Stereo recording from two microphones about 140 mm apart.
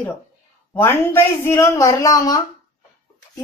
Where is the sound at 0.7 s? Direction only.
15° left (ahead or behind).